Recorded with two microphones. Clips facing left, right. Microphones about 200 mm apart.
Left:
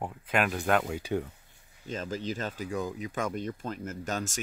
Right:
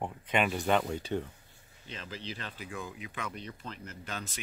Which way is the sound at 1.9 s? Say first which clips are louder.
Left 9 dB; 45° left (ahead or behind).